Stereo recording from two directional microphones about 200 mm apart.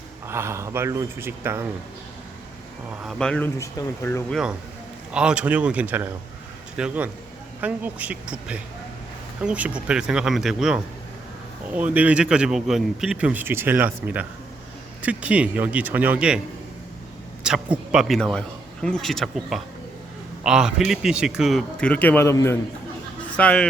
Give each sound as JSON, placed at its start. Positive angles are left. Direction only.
{"t": 0.3, "sound": "speech", "side_deg": -15}
{"t": 3.0, "sound": "speech", "side_deg": 0}
{"t": 5.1, "sound": "speech", "side_deg": -5}
{"t": 17.4, "sound": "speech", "side_deg": -5}